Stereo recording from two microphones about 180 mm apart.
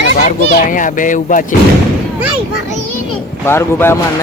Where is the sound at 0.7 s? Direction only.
45° left (ahead or behind).